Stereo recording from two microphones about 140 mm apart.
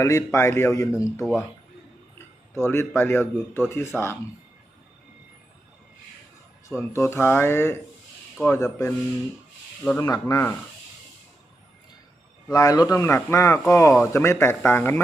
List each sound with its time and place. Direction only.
0.0 s speech: 20° left (ahead or behind)
1.2 s speech: centre (ahead or behind)
2.1 s speech: 20° left (ahead or behind)
6.7 s speech: 20° left (ahead or behind)
10.0 s speech: 25° left (ahead or behind)
12.5 s speech: 25° left (ahead or behind)